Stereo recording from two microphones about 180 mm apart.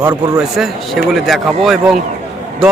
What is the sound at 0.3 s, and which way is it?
A man's voice, centre (ahead or behind).